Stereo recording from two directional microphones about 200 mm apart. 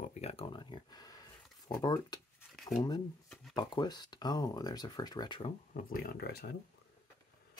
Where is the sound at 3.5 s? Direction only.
20° left (ahead or behind).